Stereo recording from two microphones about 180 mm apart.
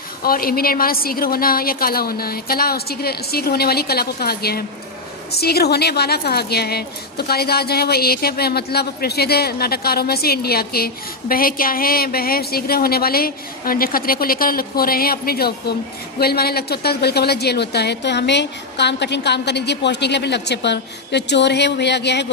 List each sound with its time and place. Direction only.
0.2 s a woman's voice: 55° left (ahead or behind)